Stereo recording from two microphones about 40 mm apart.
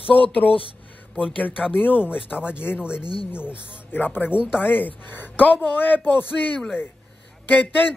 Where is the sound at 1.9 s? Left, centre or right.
Right.